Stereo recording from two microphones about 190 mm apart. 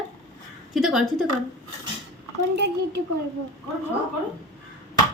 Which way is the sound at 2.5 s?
60° right (ahead or behind).